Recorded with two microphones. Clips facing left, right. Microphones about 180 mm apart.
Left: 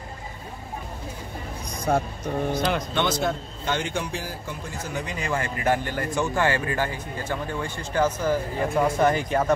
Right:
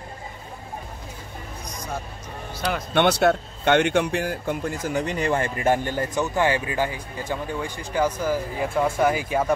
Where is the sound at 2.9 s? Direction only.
65° right (ahead or behind).